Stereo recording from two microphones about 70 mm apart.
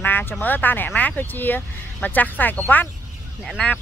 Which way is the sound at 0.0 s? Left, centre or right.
Left.